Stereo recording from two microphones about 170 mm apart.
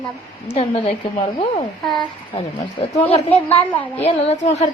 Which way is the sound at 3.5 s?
10° left (ahead or behind).